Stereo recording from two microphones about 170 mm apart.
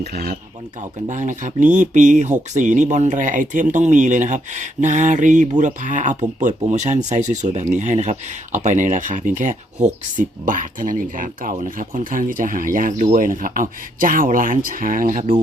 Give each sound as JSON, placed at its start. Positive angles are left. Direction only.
{"t": 0.0, "sound": "speech", "side_deg": -65}
{"t": 1.0, "sound": "speech", "side_deg": -45}